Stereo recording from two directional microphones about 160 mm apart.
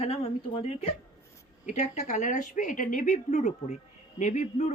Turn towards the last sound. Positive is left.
turn(degrees=45)  # may be behind; listen again after turning